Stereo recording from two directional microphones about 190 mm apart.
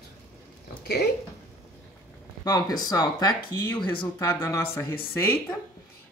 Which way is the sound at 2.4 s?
20° left (ahead or behind).